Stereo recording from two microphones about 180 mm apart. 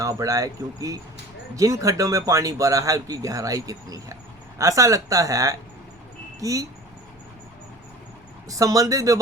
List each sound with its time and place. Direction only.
0.0 s speech: 20° right (ahead or behind)
8.4 s speech: 20° right (ahead or behind)